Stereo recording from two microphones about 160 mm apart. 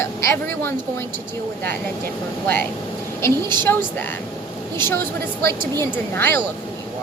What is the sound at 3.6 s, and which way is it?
Speech, 10° left (ahead or behind).